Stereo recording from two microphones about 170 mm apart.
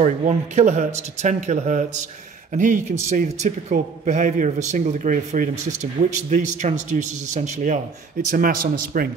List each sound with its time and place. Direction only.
0.0 s a man's voice: 45° right (ahead or behind)
8.3 s a man's voice: 55° right (ahead or behind)